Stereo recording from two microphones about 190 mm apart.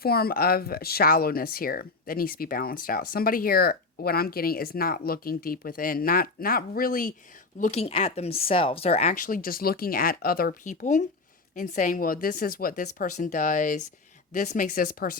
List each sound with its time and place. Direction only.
0.0 s speech: 55° left (ahead or behind)
7.6 s speech: 35° left (ahead or behind)